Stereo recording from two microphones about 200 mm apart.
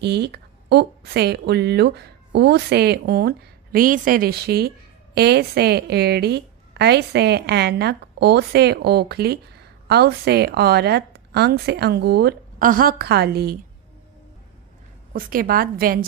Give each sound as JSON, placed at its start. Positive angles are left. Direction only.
{"t": 0.0, "sound": "a woman's voice", "side_deg": -55}
{"t": 15.1, "sound": "a woman's voice", "side_deg": -45}